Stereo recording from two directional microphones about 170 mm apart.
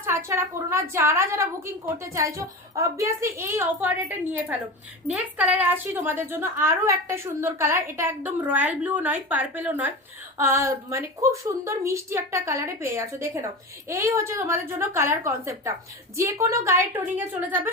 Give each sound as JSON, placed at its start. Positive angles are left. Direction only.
{"t": 0.3, "sound": "a woman's voice", "side_deg": -15}